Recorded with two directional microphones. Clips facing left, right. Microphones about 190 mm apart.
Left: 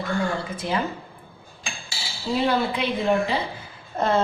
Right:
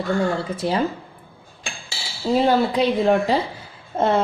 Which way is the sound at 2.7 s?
40° right (ahead or behind).